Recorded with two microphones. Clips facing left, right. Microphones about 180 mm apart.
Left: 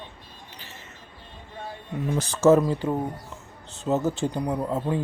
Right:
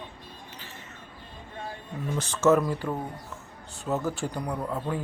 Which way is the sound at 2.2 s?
35° left (ahead or behind).